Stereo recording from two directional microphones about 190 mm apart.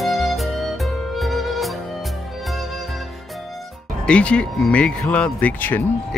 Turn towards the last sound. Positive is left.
turn(degrees=10)  # may be behind; listen again after turning